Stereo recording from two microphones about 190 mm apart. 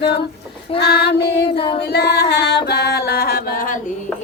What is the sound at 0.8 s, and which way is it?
Female singing, 60° left (ahead or behind).